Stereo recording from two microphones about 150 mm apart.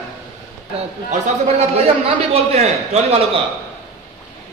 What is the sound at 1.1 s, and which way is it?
Speech, 50° right (ahead or behind).